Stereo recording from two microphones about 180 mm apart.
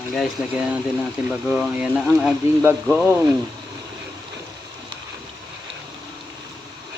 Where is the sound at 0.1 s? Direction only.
Centre (ahead or behind).